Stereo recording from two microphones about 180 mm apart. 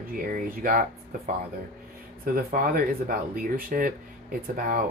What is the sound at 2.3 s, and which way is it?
Speech, 55° right (ahead or behind).